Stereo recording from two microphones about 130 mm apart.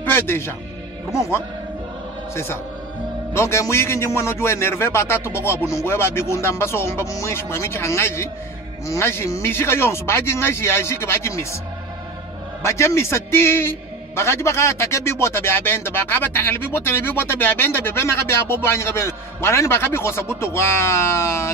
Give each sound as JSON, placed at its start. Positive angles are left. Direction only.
{"t": 0.0, "sound": "a man's voice", "side_deg": 15}
{"t": 12.6, "sound": "a man's voice", "side_deg": 20}